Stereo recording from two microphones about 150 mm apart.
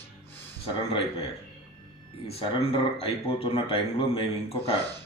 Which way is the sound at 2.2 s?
40° left (ahead or behind).